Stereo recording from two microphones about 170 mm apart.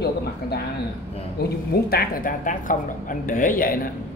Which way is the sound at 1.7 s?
65° left (ahead or behind).